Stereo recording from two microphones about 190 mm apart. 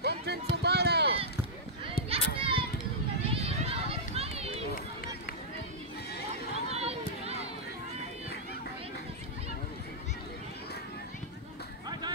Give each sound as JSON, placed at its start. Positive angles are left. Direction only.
{"t": 0.0, "sound": "run", "side_deg": -60}
{"t": 2.0, "sound": "children playing", "side_deg": -30}
{"t": 3.4, "sound": "run", "side_deg": -30}
{"t": 6.7, "sound": "a sound", "side_deg": -35}